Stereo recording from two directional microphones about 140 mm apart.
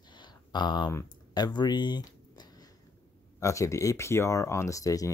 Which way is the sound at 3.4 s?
20° left (ahead or behind).